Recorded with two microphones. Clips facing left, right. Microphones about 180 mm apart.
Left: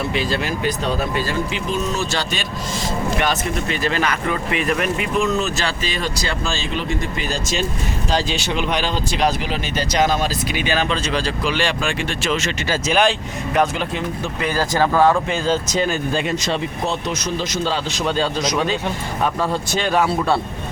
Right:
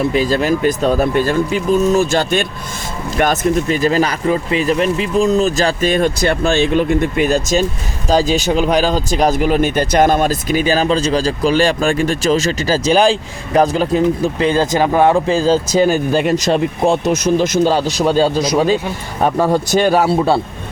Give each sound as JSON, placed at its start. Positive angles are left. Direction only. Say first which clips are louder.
{"t": 0.1, "sound": "speech", "louder": "right 7 dB", "side_deg": -45}
{"t": 5.5, "sound": "speech", "louder": "right 9 dB", "side_deg": -45}
{"t": 16.3, "sound": "speech", "louder": "right 7 dB", "side_deg": -50}